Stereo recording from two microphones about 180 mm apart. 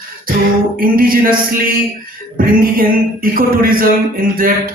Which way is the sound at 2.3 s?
50° right (ahead or behind).